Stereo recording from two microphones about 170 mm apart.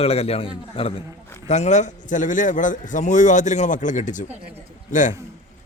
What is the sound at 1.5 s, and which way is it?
A man's voice, 45° left (ahead or behind).